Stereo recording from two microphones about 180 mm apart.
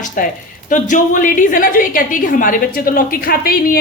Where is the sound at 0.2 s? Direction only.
50° left (ahead or behind).